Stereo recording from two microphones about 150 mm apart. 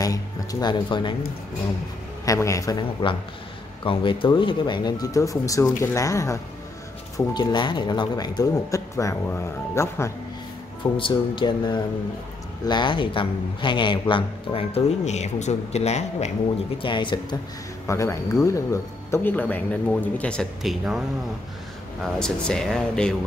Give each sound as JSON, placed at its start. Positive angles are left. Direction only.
{"t": 0.0, "sound": "speech", "side_deg": 25}
{"t": 2.2, "sound": "speech", "side_deg": 20}
{"t": 10.8, "sound": "a man's voice", "side_deg": 35}
{"t": 16.7, "sound": "a man's voice", "side_deg": 35}
{"t": 17.8, "sound": "speech", "side_deg": 20}
{"t": 22.0, "sound": "speech", "side_deg": 5}